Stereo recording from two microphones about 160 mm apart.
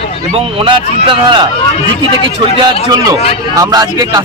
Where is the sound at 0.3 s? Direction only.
35° right (ahead or behind).